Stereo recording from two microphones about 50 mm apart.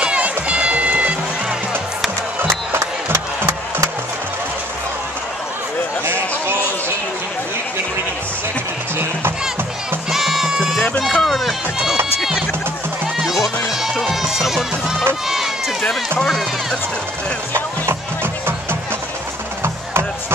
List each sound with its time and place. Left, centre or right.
0.0 s music: right
2.7 s music: right
10.1 s music: centre
10.8 s run: centre
17.8 s music: right